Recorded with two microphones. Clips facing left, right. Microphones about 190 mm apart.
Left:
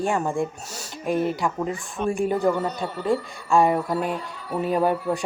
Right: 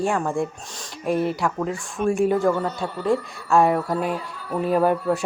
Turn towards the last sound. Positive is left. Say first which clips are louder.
# right 2 dB
turn(degrees=0)  # may be behind; listen again after turning